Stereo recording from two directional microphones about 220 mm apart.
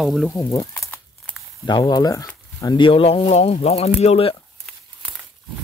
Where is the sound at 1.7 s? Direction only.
20° left (ahead or behind).